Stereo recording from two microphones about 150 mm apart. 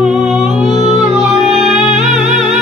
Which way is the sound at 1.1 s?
Centre (ahead or behind).